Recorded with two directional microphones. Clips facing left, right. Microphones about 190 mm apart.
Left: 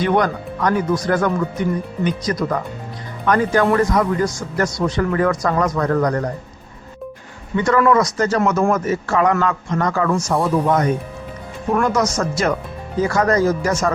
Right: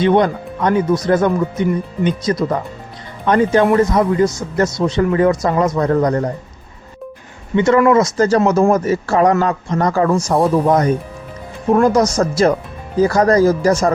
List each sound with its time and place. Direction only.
0.0 s speech: 25° right (ahead or behind)
7.5 s speech: 25° right (ahead or behind)